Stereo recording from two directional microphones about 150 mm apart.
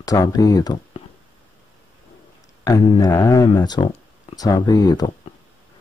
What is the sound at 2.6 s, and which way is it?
Speech, 25° left (ahead or behind).